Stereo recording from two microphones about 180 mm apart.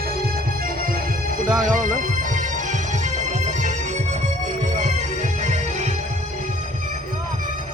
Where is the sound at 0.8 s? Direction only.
55° right (ahead or behind).